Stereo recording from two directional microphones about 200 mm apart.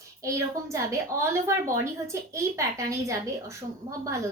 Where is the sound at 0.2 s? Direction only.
15° right (ahead or behind).